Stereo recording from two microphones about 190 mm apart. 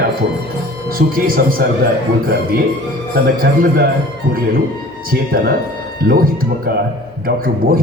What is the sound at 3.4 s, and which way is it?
Speech, 50° right (ahead or behind).